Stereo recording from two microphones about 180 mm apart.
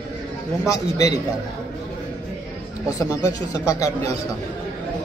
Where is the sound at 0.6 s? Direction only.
20° left (ahead or behind).